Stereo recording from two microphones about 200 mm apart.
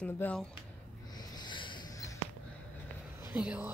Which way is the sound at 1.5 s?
25° left (ahead or behind).